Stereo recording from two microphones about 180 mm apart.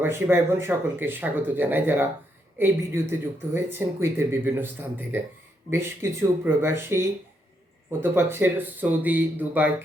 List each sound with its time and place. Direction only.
0.0 s speech: 15° right (ahead or behind)